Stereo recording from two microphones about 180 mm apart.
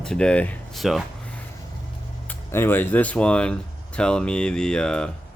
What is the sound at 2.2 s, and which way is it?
Speech, 10° left (ahead or behind).